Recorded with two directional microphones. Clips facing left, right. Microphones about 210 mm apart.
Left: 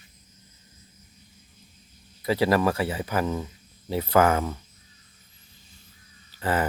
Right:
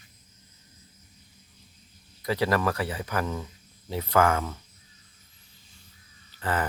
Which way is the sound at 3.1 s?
10° left (ahead or behind).